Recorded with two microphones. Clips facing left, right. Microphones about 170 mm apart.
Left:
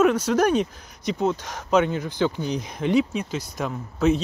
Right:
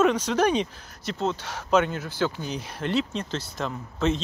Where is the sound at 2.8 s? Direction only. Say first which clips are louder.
Left 5 dB; 10° left (ahead or behind).